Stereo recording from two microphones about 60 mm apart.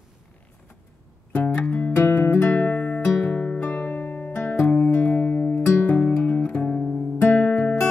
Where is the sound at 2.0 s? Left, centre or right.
Left.